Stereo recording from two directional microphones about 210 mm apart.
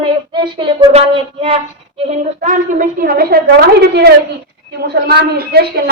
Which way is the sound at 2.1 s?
40° right (ahead or behind).